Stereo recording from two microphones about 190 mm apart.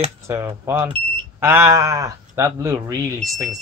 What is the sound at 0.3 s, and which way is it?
Speech, 15° right (ahead or behind).